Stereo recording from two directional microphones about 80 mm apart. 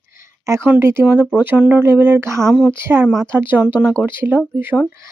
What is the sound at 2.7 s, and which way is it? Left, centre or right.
Speech, right.